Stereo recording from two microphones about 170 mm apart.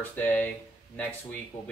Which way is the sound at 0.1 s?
10° left (ahead or behind).